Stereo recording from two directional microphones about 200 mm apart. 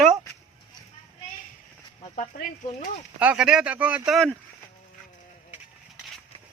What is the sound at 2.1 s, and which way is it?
Speech, 40° left (ahead or behind).